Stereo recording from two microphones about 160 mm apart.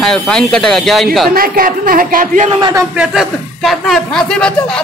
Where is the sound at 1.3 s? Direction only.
65° right (ahead or behind).